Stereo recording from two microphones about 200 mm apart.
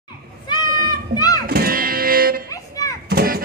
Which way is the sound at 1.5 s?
50° right (ahead or behind).